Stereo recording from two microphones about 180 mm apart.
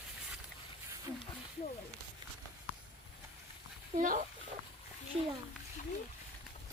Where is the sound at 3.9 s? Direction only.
50° right (ahead or behind).